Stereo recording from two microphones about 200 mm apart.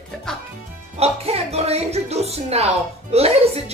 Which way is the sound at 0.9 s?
30° right (ahead or behind).